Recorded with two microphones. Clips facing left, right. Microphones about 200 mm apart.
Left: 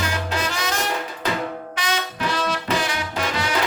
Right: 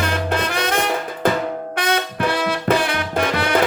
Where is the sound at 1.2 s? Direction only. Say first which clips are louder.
Right 7 dB; 55° right (ahead or behind).